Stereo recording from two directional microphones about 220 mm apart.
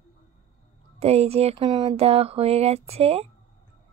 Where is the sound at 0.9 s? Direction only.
30° right (ahead or behind).